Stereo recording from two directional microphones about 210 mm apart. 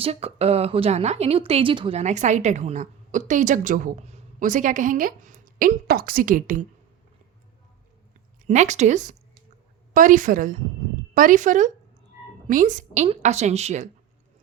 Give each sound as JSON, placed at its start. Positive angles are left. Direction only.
{"t": 0.0, "sound": "a woman's voice", "side_deg": -30}
{"t": 8.4, "sound": "a woman's voice", "side_deg": -35}